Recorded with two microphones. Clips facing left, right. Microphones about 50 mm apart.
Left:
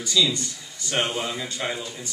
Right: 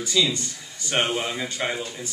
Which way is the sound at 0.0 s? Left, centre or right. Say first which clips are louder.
Even; right.